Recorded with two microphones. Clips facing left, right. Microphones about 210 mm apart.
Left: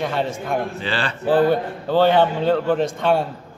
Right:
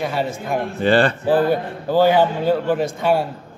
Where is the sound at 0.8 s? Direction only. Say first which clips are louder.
Right 10 dB; 50° right (ahead or behind).